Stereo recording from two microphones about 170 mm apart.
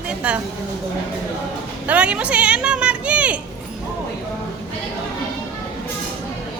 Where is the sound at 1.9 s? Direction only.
5° right (ahead or behind).